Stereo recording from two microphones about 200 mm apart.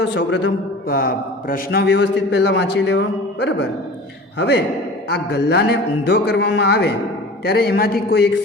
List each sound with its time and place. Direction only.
0.0 s a man's voice: 60° left (ahead or behind)